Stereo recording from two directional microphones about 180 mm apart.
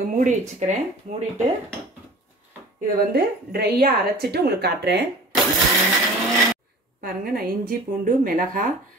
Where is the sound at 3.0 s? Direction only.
60° right (ahead or behind).